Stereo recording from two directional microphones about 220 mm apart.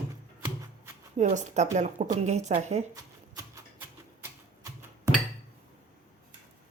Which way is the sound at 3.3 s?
15° right (ahead or behind).